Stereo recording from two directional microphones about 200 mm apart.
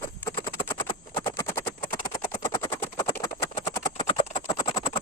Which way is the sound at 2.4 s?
15° left (ahead or behind).